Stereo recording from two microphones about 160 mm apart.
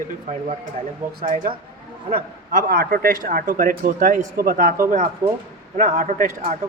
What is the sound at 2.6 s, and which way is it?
Speech, 70° right (ahead or behind).